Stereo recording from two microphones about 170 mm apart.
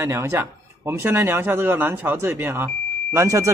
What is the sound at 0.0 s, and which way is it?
Speech, 15° right (ahead or behind).